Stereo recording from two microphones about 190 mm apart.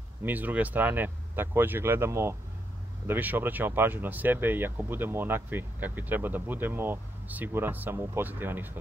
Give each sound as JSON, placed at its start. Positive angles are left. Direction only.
{"t": 0.2, "sound": "speech", "side_deg": -10}